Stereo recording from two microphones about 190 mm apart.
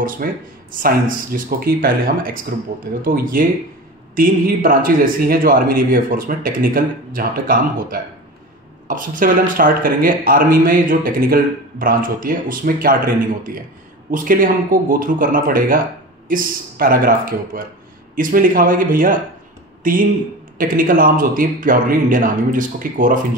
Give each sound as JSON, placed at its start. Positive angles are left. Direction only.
{"t": 0.0, "sound": "speech", "side_deg": -45}